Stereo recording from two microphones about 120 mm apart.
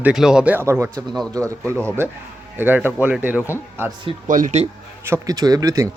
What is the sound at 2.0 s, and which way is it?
Speech, 20° right (ahead or behind).